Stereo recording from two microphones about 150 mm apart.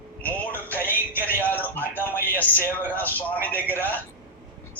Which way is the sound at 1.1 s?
15° right (ahead or behind).